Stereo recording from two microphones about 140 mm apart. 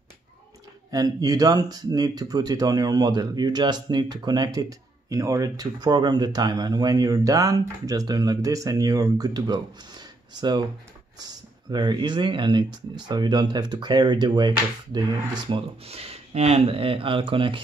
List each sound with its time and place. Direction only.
0.9 s speech: 25° right (ahead or behind)
15.9 s speech: 45° right (ahead or behind)